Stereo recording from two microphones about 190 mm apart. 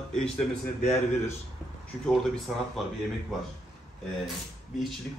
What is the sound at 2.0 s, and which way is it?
Speech, 5° left (ahead or behind).